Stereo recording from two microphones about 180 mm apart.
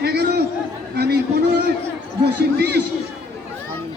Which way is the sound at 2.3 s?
65° right (ahead or behind).